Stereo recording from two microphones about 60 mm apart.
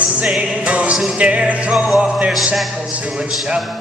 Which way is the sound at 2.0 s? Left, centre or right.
Centre.